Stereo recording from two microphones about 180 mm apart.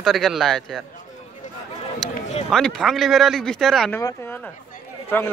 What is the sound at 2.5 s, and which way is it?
Speech, 5° left (ahead or behind).